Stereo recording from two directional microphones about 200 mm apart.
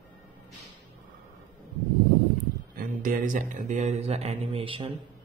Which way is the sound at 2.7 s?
45° right (ahead or behind).